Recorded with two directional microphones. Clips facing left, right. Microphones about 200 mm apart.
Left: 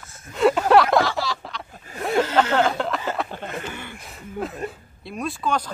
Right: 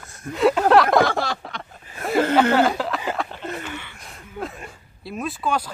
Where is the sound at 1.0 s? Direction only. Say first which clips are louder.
Right 3 dB; 50° right (ahead or behind).